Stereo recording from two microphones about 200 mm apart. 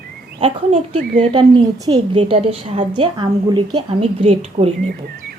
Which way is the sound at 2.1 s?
30° right (ahead or behind).